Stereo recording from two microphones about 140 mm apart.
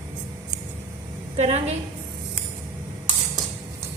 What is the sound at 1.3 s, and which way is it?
Speech, 50° right (ahead or behind).